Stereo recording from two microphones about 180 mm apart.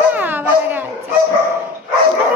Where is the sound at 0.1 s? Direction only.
10° right (ahead or behind).